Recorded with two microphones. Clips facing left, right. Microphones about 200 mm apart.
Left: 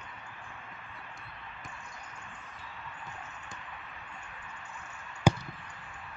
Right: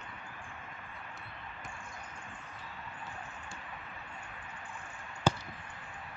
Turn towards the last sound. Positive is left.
turn(degrees=15)  # may be behind; listen again after turning